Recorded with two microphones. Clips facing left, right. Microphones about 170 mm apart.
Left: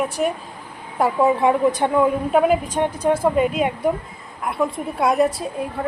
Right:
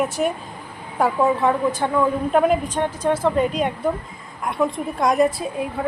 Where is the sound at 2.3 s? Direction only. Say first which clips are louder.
Left 1 dB; 5° left (ahead or behind).